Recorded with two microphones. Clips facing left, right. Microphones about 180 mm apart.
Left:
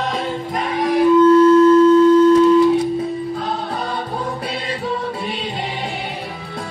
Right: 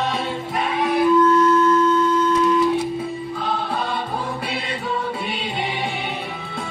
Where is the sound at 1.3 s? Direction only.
30° left (ahead or behind).